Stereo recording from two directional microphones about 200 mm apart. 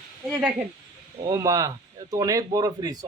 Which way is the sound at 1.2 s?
15° right (ahead or behind).